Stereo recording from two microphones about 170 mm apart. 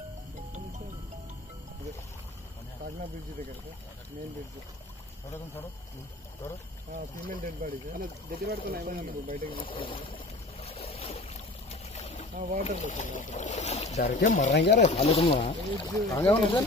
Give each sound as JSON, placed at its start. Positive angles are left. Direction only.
{"t": 7.0, "sound": "speech", "side_deg": -55}
{"t": 9.5, "sound": "boat", "side_deg": 30}
{"t": 12.4, "sound": "speech", "side_deg": -55}
{"t": 12.6, "sound": "speech", "side_deg": 45}
{"t": 14.5, "sound": "speech", "side_deg": 90}
{"t": 14.8, "sound": "speech", "side_deg": 40}
{"t": 15.9, "sound": "speech", "side_deg": 20}